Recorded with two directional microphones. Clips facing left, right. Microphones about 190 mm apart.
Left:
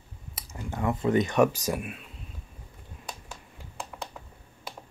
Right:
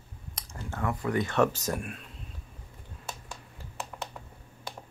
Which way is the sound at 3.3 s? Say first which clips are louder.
Even; 5° right (ahead or behind).